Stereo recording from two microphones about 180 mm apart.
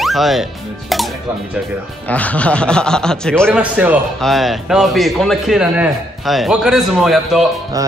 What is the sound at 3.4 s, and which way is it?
A man's voice, 10° right (ahead or behind).